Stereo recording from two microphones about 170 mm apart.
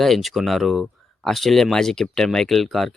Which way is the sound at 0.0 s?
Centre (ahead or behind).